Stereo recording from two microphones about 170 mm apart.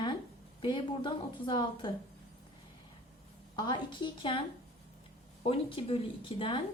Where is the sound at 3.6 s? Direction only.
25° left (ahead or behind).